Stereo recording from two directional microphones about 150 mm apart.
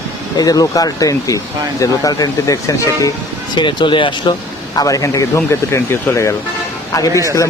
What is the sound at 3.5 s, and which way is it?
Speech, 35° left (ahead or behind).